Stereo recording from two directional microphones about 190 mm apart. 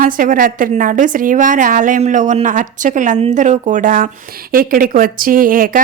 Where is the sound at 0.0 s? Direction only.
45° right (ahead or behind).